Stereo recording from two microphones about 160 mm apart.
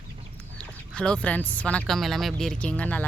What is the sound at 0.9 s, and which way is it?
Speech, 5° left (ahead or behind).